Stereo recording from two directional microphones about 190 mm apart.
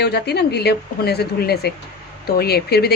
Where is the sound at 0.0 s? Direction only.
60° left (ahead or behind).